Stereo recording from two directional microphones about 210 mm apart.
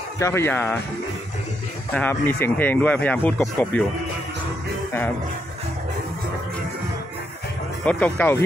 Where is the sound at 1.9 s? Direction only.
10° left (ahead or behind).